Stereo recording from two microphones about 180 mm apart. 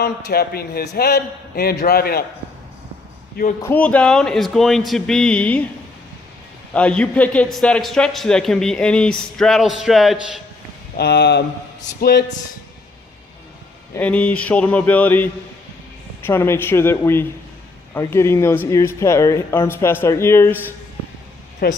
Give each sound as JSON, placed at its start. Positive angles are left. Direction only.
{"t": 0.3, "sound": "a man's voice", "side_deg": 60}
{"t": 3.6, "sound": "a man's voice", "side_deg": 10}
{"t": 6.7, "sound": "a man's voice", "side_deg": 5}
{"t": 10.9, "sound": "a man's voice", "side_deg": 65}
{"t": 13.9, "sound": "speech", "side_deg": 10}
{"t": 21.6, "sound": "a man's voice", "side_deg": 60}